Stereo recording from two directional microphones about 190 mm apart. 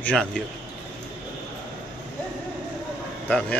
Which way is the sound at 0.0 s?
5° left (ahead or behind).